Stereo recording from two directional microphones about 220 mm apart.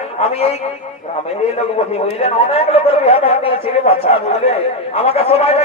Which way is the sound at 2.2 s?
25° left (ahead or behind).